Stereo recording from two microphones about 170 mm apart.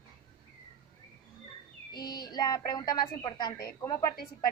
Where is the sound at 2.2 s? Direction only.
20° left (ahead or behind).